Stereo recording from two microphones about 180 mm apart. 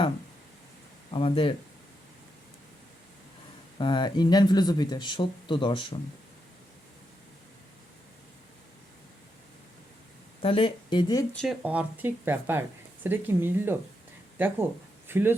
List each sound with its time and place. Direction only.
1.1 s speech: 30° left (ahead or behind)
3.8 s speech: 25° left (ahead or behind)
10.4 s speech: 30° left (ahead or behind)
11.6 s speech: 10° right (ahead or behind)